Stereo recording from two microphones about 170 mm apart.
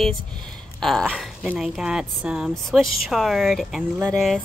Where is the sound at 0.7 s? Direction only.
Centre (ahead or behind).